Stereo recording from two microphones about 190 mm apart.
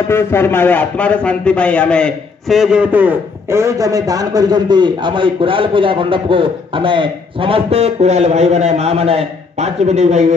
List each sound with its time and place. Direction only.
0.1 s a man's voice: 10° left (ahead or behind); by 10.3 s 35° right (ahead or behind)